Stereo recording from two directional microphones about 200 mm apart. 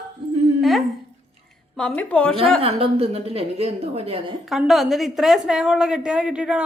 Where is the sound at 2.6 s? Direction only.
30° right (ahead or behind).